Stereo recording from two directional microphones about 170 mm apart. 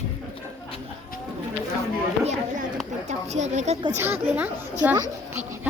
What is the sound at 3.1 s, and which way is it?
Speech, 45° right (ahead or behind).